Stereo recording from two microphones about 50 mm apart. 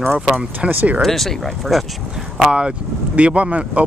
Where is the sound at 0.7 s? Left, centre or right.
Right.